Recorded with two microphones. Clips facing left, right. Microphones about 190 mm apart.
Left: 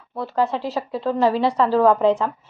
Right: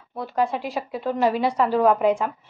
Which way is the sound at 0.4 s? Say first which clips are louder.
Left 2 dB; 15° right (ahead or behind).